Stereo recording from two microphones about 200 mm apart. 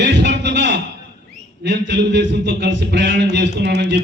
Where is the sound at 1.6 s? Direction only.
60° right (ahead or behind).